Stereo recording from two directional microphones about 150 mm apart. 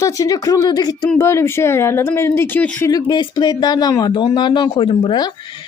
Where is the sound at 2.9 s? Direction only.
30° left (ahead or behind).